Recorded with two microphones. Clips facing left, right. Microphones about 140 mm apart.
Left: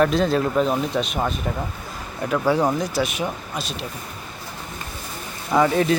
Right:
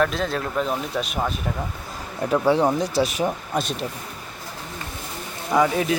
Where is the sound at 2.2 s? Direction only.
30° right (ahead or behind).